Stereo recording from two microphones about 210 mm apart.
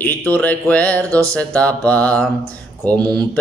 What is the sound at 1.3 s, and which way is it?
Mantra, 5° left (ahead or behind).